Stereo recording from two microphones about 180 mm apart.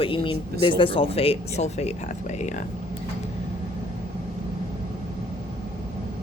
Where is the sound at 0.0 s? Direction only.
30° left (ahead or behind).